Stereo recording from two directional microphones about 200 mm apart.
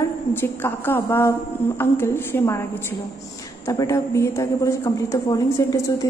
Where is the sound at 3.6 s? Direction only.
15° left (ahead or behind).